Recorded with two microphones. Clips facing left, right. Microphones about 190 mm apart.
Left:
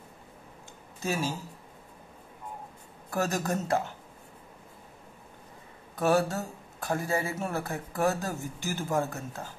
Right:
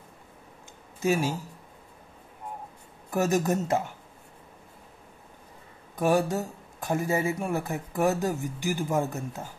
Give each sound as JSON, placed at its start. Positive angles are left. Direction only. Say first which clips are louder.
{"t": 1.0, "sound": "speech", "louder": "right 5 dB", "side_deg": -15}
{"t": 3.1, "sound": "speech", "louder": "right 5 dB", "side_deg": -15}
{"t": 5.9, "sound": "speech", "louder": "right 1 dB", "side_deg": -15}